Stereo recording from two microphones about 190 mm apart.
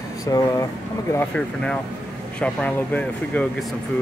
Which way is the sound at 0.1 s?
20° left (ahead or behind).